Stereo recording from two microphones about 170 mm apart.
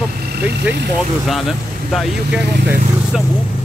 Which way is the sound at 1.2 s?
Centre (ahead or behind).